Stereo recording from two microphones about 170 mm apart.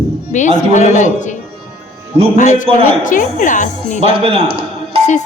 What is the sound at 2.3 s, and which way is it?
A man's voice, 45° left (ahead or behind).